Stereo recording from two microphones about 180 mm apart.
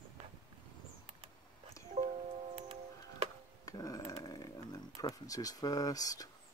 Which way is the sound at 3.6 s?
20° left (ahead or behind).